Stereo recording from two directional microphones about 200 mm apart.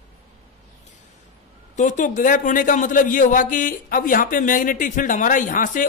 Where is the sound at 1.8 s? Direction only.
40° left (ahead or behind).